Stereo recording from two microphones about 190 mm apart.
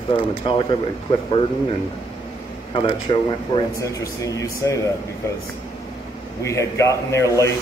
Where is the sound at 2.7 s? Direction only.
25° left (ahead or behind).